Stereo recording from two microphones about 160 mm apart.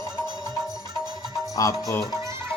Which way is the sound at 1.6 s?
20° left (ahead or behind).